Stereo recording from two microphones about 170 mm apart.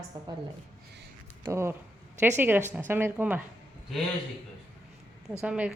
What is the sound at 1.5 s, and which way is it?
A woman's voice, 15° right (ahead or behind).